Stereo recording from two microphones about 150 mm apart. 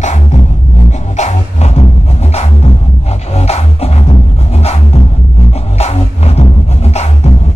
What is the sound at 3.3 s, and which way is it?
Music, 45° left (ahead or behind).